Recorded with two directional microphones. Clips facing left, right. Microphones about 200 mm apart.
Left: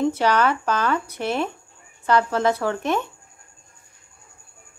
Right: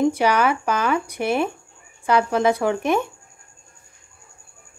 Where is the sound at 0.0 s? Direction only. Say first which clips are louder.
Right 1 dB; 10° right (ahead or behind).